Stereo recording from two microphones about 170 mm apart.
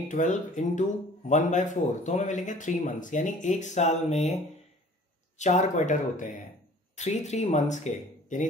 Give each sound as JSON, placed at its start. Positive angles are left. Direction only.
{"t": 0.1, "sound": "speech", "side_deg": 45}
{"t": 5.4, "sound": "speech", "side_deg": 45}